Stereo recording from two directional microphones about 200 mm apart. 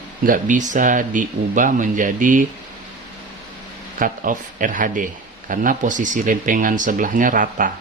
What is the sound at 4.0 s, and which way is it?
Speech, 40° right (ahead or behind).